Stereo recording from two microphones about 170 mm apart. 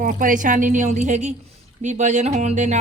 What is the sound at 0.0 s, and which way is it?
Speech, 50° right (ahead or behind).